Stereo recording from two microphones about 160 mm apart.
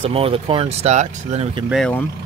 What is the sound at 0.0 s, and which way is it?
Speech, 35° right (ahead or behind).